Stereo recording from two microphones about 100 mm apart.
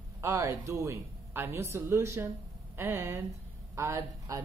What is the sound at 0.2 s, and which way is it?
A woman's voice, 30° right (ahead or behind).